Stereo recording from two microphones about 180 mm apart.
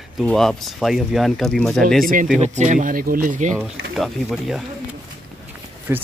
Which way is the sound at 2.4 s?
45° right (ahead or behind).